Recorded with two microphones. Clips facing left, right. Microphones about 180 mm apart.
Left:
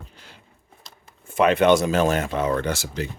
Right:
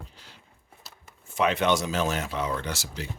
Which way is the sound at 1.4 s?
55° left (ahead or behind).